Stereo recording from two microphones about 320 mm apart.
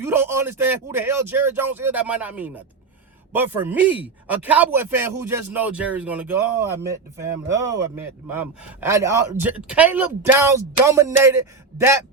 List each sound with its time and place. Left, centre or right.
0.0 s a man's voice: centre